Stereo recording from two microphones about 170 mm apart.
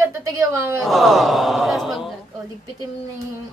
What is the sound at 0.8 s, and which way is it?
Speech, centre (ahead or behind).